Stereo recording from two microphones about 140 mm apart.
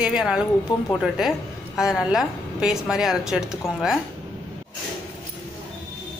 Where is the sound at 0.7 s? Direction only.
30° left (ahead or behind).